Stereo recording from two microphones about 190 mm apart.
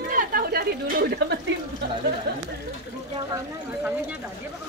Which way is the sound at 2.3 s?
60° right (ahead or behind).